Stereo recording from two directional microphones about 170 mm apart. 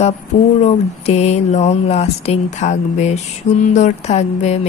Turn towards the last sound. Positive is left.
turn(degrees=40)  # may be behind; listen again after turning